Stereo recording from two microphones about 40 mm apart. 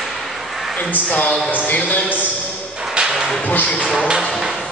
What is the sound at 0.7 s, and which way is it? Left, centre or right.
Speech, left.